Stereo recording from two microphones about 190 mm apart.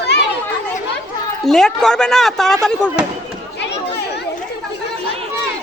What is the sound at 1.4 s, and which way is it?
Speech, centre (ahead or behind).